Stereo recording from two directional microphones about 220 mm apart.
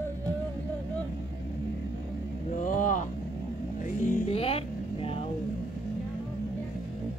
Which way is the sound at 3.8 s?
35° left (ahead or behind).